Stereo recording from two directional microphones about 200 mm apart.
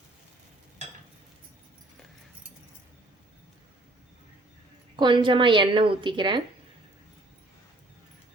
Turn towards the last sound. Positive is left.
turn(degrees=-25)  # may be behind; listen again after turning